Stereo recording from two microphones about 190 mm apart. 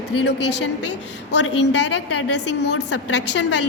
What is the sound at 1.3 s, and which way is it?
Speech, 65° left (ahead or behind).